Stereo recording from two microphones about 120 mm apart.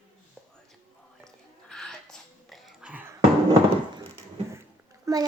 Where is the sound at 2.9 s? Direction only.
20° right (ahead or behind).